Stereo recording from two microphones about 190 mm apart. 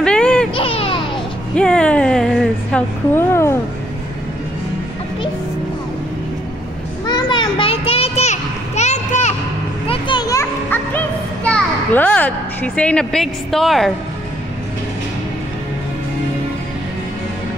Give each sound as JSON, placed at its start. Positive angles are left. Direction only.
{"t": 0.0, "sound": "baby cry", "side_deg": 5}
{"t": 0.6, "sound": "music", "side_deg": 30}
{"t": 1.5, "sound": "a sound", "side_deg": 5}
{"t": 7.1, "sound": "a sound", "side_deg": 25}
{"t": 9.8, "sound": "music", "side_deg": 25}
{"t": 11.4, "sound": "a child's voice", "side_deg": 5}